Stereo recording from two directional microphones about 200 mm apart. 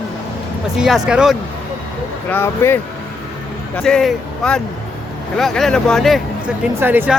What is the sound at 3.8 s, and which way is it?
Speech, 5° left (ahead or behind).